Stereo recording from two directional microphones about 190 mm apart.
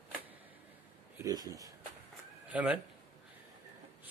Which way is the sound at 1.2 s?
20° right (ahead or behind).